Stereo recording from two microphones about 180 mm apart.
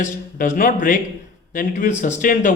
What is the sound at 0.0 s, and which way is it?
A man's voice, 50° left (ahead or behind).